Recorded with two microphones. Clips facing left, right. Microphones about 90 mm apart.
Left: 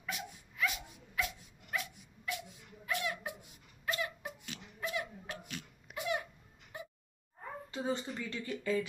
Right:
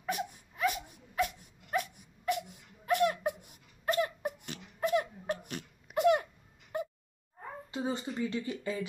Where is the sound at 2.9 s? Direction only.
55° right (ahead or behind).